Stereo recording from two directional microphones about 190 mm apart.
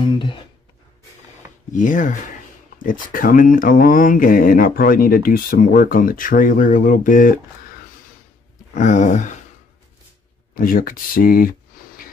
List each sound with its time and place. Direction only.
1.7 s speech: 45° left (ahead or behind)
8.7 s speech: 40° left (ahead or behind)
10.5 s speech: 50° left (ahead or behind)